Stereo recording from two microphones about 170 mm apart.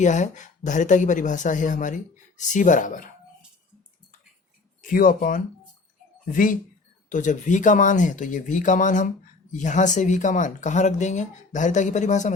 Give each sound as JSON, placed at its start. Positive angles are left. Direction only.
{"t": 0.0, "sound": "speech", "side_deg": 45}
{"t": 4.8, "sound": "speech", "side_deg": 55}